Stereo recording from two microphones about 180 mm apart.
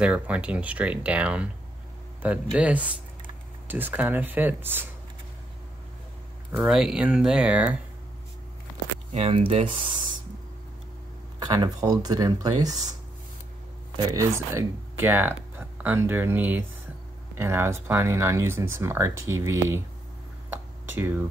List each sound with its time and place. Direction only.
0.0 s speech: 5° right (ahead or behind)
6.5 s speech: 5° right (ahead or behind)
9.1 s speech: 30° right (ahead or behind)
11.3 s speech: 25° right (ahead or behind)
13.9 s speech: 15° right (ahead or behind)
20.4 s a sound: 10° right (ahead or behind)